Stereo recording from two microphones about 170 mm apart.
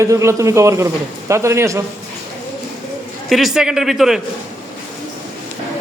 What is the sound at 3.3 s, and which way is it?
Speech, centre (ahead or behind).